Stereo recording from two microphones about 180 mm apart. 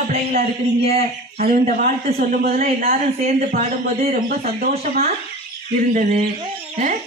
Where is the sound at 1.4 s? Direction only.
50° right (ahead or behind).